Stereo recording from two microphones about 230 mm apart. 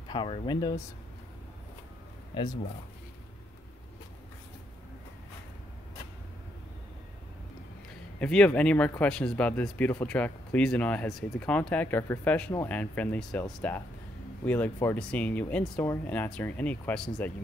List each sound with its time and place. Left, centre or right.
0.1 s speech: centre
2.3 s speech: left
8.2 s speech: centre